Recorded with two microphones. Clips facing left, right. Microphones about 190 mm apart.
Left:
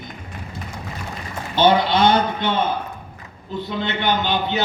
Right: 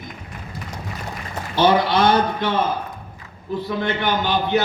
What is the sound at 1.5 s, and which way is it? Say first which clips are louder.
Speech: even; 25° left (ahead or behind).